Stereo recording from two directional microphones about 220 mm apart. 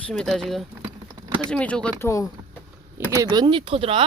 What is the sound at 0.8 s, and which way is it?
Typing, 15° right (ahead or behind).